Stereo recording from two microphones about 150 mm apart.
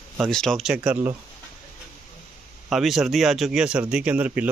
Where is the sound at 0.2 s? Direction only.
5° left (ahead or behind).